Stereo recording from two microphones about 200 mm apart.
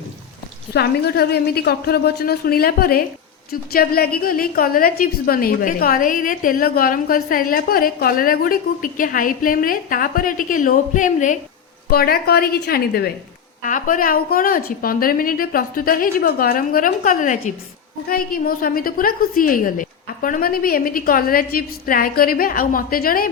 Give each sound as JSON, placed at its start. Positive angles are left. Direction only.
{"t": 0.7, "sound": "a woman's voice", "side_deg": 55}
{"t": 11.9, "sound": "a woman's voice", "side_deg": 50}
{"t": 13.7, "sound": "a woman's voice", "side_deg": 40}